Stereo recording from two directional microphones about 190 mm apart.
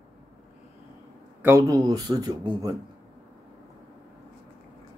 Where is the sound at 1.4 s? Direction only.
15° right (ahead or behind).